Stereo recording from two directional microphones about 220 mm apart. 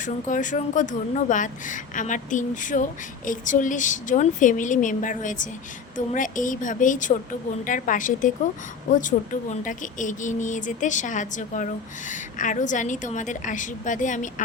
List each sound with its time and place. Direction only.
0.0 s speech: 35° left (ahead or behind)